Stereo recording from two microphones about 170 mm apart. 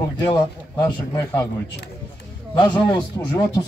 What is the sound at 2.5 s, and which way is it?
A man's voice, 25° left (ahead or behind).